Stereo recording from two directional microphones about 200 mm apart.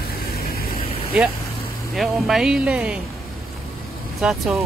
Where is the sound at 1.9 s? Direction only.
Centre (ahead or behind).